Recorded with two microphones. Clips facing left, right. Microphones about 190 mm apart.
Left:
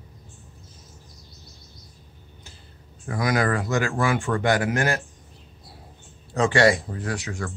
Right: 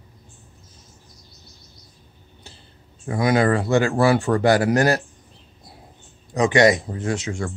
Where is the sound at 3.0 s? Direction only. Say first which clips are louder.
Right 5 dB; 25° right (ahead or behind).